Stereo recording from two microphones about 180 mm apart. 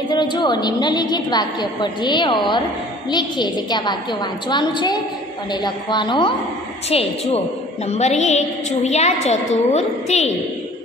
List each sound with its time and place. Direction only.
0.1 s a woman's voice: 25° left (ahead or behind)